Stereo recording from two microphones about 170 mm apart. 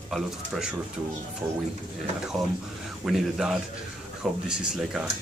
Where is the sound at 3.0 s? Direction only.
Centre (ahead or behind).